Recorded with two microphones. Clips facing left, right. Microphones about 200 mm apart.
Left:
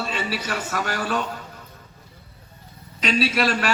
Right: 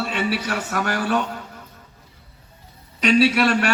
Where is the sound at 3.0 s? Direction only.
65° right (ahead or behind).